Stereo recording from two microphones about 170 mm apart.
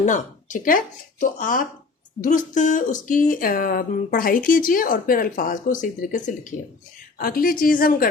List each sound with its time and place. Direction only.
0.0 s a woman's voice: 50° left (ahead or behind)